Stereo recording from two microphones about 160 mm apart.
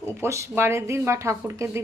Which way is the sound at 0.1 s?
15° right (ahead or behind).